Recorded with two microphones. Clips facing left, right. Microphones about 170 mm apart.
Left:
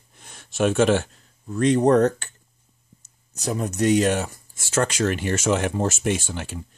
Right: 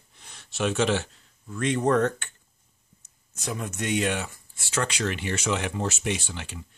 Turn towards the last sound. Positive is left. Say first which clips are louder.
# left 5 dB
turn(degrees=45)  # may be behind; listen again after turning